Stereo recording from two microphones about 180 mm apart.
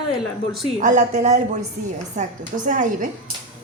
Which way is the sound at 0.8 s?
45° right (ahead or behind).